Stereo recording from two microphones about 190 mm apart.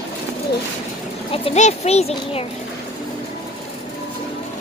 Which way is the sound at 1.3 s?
35° left (ahead or behind).